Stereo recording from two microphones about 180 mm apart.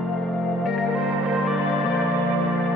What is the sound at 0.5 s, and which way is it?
Music, centre (ahead or behind).